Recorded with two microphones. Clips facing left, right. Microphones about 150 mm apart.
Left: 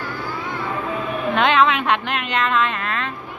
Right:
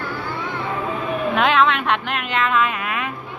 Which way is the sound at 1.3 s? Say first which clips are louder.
Left 1 dB; centre (ahead or behind).